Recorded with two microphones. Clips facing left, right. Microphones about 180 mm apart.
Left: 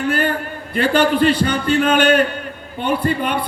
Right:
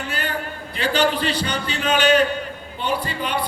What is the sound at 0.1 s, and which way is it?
A man's voice, 50° left (ahead or behind).